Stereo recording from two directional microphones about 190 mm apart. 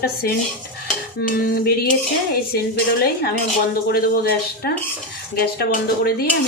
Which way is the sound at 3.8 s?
55° left (ahead or behind).